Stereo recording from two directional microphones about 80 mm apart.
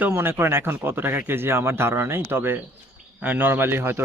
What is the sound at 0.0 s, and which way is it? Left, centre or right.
Speech, right.